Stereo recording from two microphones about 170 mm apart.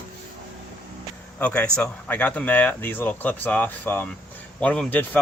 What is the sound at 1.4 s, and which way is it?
Speech, 5° left (ahead or behind).